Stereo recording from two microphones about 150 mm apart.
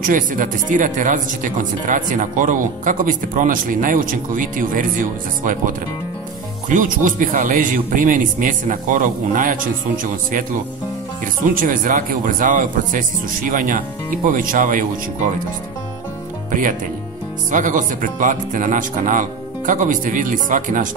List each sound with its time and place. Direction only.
0.0 s speech: 65° right (ahead or behind)
11.5 s speech: 65° right (ahead or behind)
17.5 s speech: 60° right (ahead or behind)